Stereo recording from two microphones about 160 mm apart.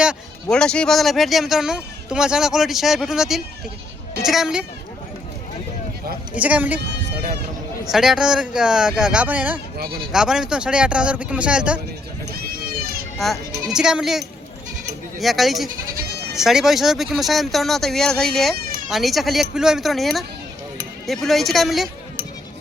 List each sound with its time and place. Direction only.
0.5 s speech: 5° left (ahead or behind)
6.3 s speech: 10° right (ahead or behind)
7.9 s speech: centre (ahead or behind)
13.1 s speech: centre (ahead or behind)
18.5 s baby cry: 70° right (ahead or behind)
18.9 s speech: centre (ahead or behind)